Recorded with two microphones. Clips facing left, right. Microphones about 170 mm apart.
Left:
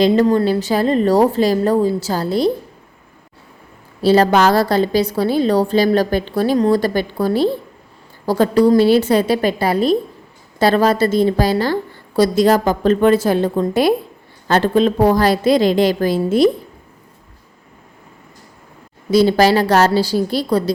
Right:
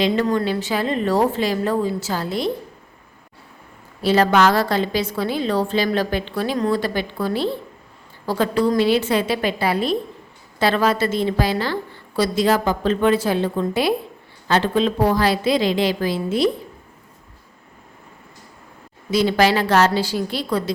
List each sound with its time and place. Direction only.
0.0 s a woman's voice: 35° left (ahead or behind)
4.0 s a woman's voice: 35° left (ahead or behind)
19.1 s a woman's voice: 35° left (ahead or behind)